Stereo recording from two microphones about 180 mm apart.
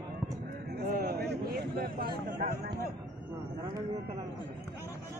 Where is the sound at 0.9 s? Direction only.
55° right (ahead or behind).